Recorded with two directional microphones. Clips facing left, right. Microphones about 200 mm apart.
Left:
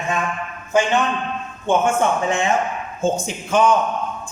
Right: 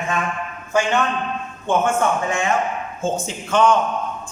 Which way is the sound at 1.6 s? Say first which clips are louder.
Left 1 dB; 20° left (ahead or behind).